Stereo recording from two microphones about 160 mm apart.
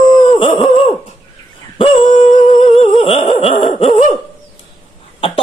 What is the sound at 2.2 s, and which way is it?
Humming, 30° left (ahead or behind).